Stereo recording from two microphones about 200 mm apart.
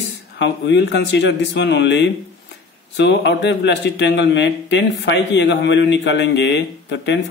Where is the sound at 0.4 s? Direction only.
60° left (ahead or behind).